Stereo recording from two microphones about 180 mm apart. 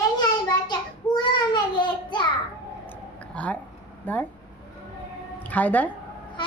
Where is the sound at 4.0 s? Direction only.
10° left (ahead or behind).